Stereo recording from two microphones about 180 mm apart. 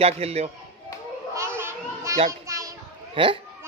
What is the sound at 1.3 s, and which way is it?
Children playing, 15° right (ahead or behind).